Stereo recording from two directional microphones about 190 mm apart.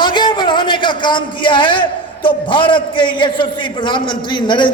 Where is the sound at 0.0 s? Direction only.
25° left (ahead or behind).